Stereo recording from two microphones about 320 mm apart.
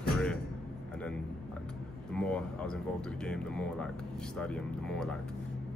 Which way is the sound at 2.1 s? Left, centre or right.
Centre.